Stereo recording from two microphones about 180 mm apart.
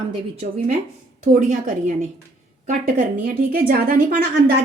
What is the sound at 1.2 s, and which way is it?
Speech, 45° right (ahead or behind).